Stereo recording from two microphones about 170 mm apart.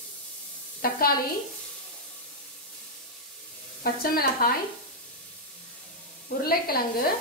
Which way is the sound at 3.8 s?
60° left (ahead or behind).